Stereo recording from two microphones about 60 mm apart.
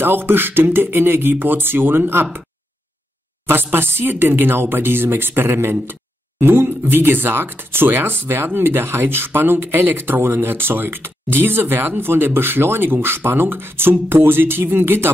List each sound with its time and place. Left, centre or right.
0.0 s speech: right
3.4 s speech: right